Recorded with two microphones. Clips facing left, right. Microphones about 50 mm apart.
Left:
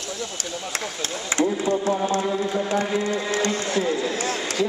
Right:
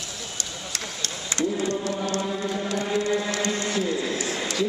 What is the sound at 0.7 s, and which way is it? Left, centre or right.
Speech, left.